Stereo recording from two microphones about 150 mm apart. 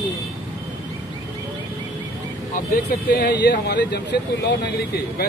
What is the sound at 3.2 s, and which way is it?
Speech, 90° left.